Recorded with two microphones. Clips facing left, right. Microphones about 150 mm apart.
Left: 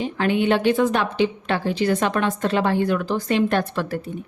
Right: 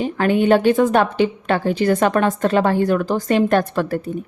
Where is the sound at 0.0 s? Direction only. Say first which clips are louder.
Right 4 dB; 45° right (ahead or behind).